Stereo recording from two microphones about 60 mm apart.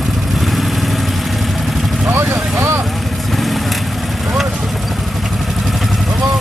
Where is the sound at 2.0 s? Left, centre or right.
Right.